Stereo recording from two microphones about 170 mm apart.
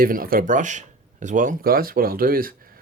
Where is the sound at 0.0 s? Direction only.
55° right (ahead or behind).